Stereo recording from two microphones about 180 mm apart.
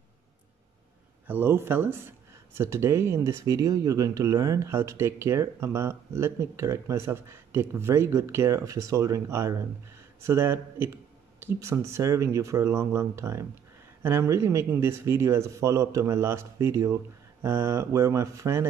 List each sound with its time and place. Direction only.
1.2 s speech: 10° right (ahead or behind)